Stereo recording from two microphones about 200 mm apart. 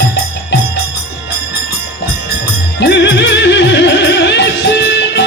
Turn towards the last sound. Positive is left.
turn(degrees=60)  # may be behind; listen again after turning